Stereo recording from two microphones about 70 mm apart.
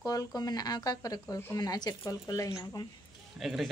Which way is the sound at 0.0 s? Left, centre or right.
Left.